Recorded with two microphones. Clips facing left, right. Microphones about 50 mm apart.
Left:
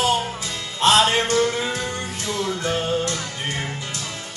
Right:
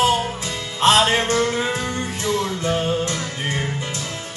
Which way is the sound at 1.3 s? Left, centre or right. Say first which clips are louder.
Right 1 dB; centre.